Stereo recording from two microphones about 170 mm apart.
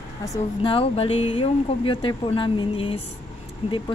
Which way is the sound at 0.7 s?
35° left (ahead or behind).